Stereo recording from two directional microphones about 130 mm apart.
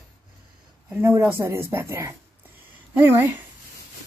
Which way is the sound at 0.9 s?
20° right (ahead or behind).